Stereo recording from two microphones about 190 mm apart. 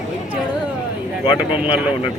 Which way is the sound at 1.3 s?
5° right (ahead or behind).